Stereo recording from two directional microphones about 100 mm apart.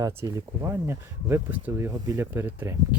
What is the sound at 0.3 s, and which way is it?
Speech, 30° right (ahead or behind).